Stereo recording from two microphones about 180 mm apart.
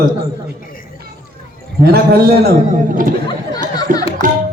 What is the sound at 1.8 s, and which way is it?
Speech, 60° right (ahead or behind).